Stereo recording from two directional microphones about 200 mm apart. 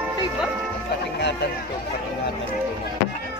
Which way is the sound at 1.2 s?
55° left (ahead or behind).